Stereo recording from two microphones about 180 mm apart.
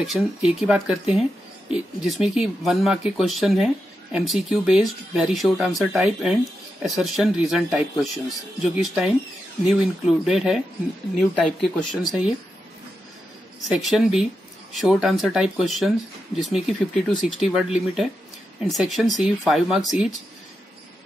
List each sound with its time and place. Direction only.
0.0 s speech: 5° right (ahead or behind)
13.7 s speech: centre (ahead or behind)